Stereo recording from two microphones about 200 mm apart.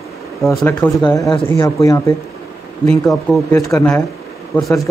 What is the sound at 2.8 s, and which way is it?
Speech, centre (ahead or behind).